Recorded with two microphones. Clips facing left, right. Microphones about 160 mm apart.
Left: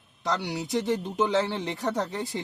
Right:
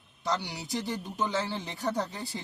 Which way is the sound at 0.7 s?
75° left (ahead or behind).